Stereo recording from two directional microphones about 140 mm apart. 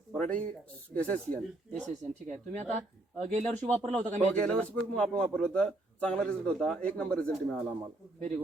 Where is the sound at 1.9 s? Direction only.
60° right (ahead or behind).